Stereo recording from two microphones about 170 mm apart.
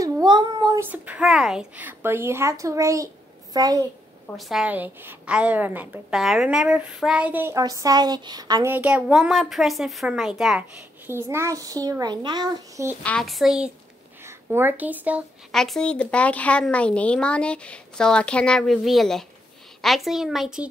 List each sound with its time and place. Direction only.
0.0 s a sound: 25° right (ahead or behind)
0.8 s a woman's voice: 10° right (ahead or behind)
4.4 s a woman's voice: centre (ahead or behind); by 8.7 s 25° right (ahead or behind)
8.7 s speech: 10° right (ahead or behind)
11.1 s a child's voice: 15° right (ahead or behind)
13.0 s speech: 5° left (ahead or behind)
14.2 s speech: 15° right (ahead or behind)
15.5 s speech: centre (ahead or behind)